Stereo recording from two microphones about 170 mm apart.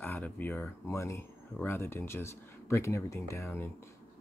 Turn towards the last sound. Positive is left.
turn(degrees=15)  # may be behind; listen again after turning